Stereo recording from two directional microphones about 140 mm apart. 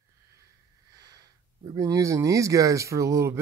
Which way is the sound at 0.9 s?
25° right (ahead or behind).